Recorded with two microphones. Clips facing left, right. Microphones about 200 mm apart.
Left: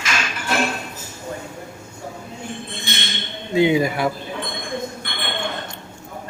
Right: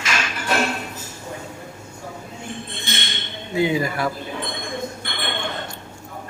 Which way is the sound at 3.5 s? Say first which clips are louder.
Left 4 dB; 20° left (ahead or behind).